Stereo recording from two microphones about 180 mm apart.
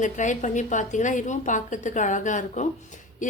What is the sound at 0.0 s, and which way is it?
A woman's voice, 45° left (ahead or behind).